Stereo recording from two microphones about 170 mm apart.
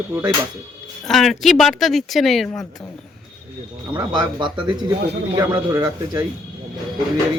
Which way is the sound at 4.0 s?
25° right (ahead or behind).